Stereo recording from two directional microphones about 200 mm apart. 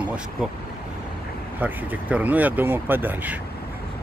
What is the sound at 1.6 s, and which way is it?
Speech, 10° right (ahead or behind).